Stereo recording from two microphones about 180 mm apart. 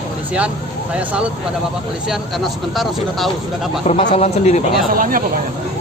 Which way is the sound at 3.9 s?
35° left (ahead or behind).